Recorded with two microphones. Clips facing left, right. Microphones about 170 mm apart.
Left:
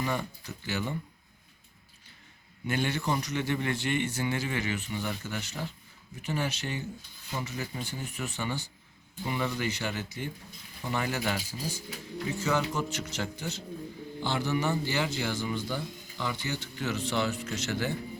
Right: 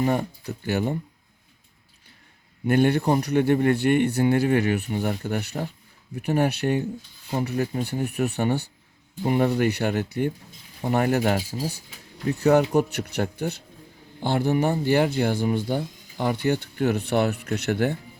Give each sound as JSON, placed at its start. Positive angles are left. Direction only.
{"t": 0.0, "sound": "speech", "side_deg": -45}
{"t": 2.6, "sound": "speech", "side_deg": -55}